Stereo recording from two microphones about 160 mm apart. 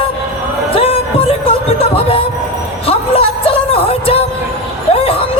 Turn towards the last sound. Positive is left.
turn(degrees=35)  # may be behind; listen again after turning